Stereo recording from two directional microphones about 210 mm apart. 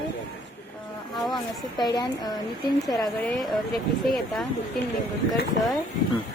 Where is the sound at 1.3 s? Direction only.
20° left (ahead or behind).